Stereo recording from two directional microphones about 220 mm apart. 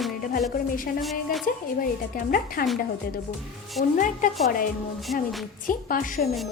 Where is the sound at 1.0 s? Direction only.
Centre (ahead or behind).